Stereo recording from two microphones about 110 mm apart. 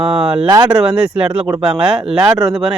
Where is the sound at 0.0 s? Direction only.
10° right (ahead or behind).